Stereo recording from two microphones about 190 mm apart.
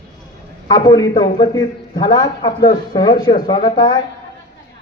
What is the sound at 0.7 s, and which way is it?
A man's voice, 20° left (ahead or behind).